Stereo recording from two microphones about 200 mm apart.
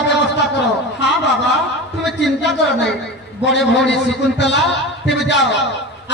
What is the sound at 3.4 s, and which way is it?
A man's voice, 60° left (ahead or behind).